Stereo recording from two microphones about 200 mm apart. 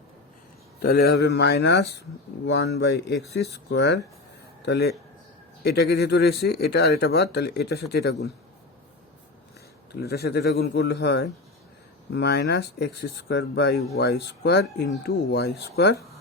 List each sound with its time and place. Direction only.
0.8 s speech: 50° left (ahead or behind)
9.9 s speech: 55° left (ahead or behind)